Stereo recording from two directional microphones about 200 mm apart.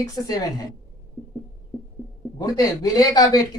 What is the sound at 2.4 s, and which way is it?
Speech, 20° left (ahead or behind).